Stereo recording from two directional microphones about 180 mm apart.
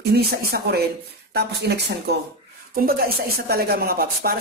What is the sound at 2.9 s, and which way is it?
Speech, 55° right (ahead or behind).